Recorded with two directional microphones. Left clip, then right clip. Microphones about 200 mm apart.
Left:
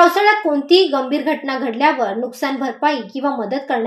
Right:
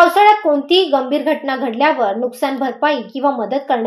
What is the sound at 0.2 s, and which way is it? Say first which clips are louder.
A woman's voice: right 4 dB; 25° right (ahead or behind).